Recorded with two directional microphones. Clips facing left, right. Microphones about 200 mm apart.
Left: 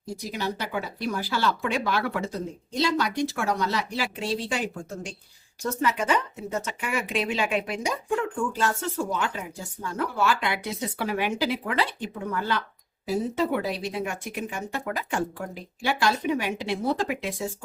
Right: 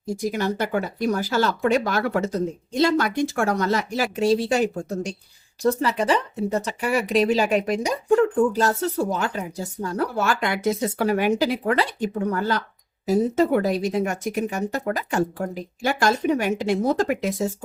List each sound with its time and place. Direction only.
0.1 s speech: 50° right (ahead or behind)